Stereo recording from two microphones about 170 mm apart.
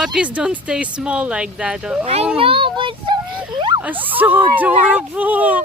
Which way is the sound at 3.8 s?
10° right (ahead or behind).